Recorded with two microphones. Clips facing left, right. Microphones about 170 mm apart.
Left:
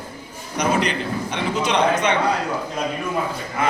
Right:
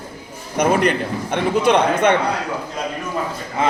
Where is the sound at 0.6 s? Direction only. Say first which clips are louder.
Right 4 dB; 50° right (ahead or behind).